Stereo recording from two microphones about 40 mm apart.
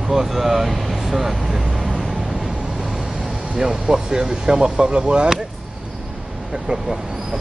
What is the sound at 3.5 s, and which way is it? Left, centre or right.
Speech, centre.